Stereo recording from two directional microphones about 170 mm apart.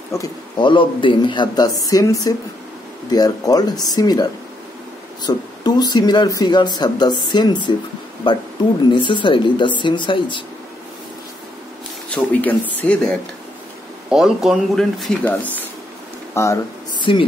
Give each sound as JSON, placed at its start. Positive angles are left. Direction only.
{"t": 0.1, "sound": "speech", "side_deg": 25}
{"t": 12.1, "sound": "speech", "side_deg": 10}
{"t": 17.1, "sound": "speech", "side_deg": 30}